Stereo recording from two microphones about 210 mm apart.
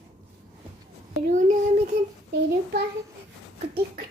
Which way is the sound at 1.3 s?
35° right (ahead or behind).